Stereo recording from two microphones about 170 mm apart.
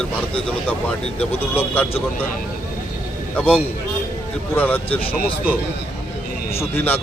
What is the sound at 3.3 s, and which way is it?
Speech, 10° left (ahead or behind).